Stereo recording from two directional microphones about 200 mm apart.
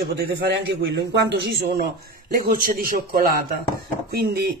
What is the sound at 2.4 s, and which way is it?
A man's voice, 45° right (ahead or behind).